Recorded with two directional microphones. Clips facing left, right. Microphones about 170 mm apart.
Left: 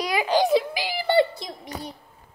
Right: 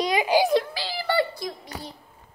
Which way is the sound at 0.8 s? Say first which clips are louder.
Left 4 dB; 15° left (ahead or behind).